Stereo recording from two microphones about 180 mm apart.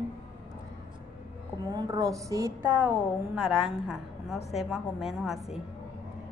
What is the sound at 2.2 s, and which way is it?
Music, 15° right (ahead or behind).